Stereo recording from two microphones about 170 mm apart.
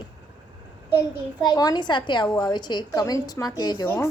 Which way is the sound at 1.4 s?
25° left (ahead or behind).